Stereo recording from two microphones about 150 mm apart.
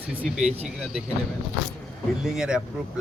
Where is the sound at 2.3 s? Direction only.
5° right (ahead or behind).